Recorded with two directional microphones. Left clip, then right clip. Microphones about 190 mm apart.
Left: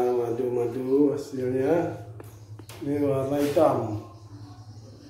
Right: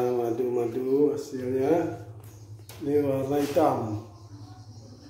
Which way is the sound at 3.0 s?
30° right (ahead or behind).